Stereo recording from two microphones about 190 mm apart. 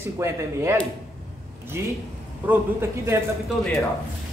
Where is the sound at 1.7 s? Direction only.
15° right (ahead or behind).